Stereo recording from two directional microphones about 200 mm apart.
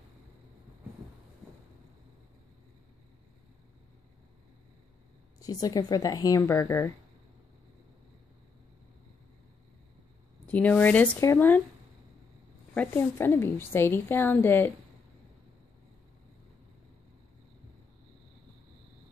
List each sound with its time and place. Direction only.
5.4 s a woman's voice: 20° left (ahead or behind)
10.4 s a woman's voice: 5° left (ahead or behind)
12.7 s a woman's voice: 10° left (ahead or behind)